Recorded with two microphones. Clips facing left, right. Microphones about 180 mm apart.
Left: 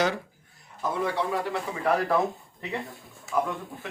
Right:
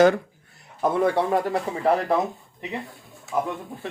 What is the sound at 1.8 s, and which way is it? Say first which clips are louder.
Speech: right 2 dB; 20° right (ahead or behind).